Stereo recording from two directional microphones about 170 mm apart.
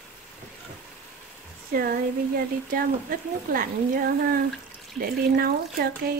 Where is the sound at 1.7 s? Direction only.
60° right (ahead or behind).